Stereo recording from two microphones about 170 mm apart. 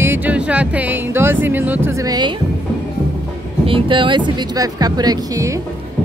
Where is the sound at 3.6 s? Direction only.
30° right (ahead or behind).